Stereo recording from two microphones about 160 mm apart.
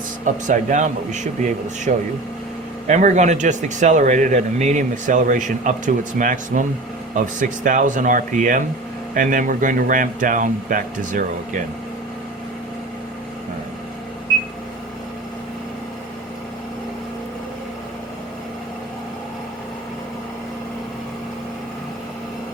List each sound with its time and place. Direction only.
0.4 s a man's voice: 50° right (ahead or behind)